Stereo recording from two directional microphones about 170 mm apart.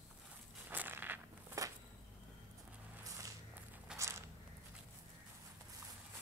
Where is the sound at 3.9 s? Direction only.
5° right (ahead or behind).